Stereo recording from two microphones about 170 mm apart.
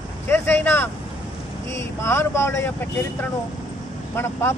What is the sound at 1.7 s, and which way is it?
Speech, 15° left (ahead or behind).